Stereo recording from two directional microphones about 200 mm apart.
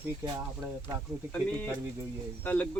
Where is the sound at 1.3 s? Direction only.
5° left (ahead or behind).